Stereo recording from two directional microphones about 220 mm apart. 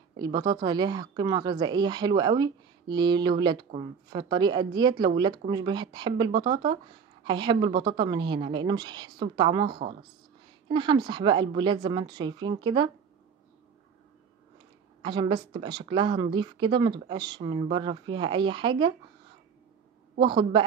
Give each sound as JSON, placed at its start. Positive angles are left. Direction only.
{"t": 0.2, "sound": "speech", "side_deg": -20}
{"t": 15.0, "sound": "speech", "side_deg": -20}
{"t": 20.2, "sound": "speech", "side_deg": -20}